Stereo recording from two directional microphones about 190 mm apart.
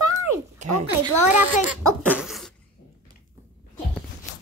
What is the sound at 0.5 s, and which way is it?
Speech, 40° right (ahead or behind).